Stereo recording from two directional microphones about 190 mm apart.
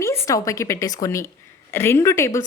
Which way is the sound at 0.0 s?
15° left (ahead or behind).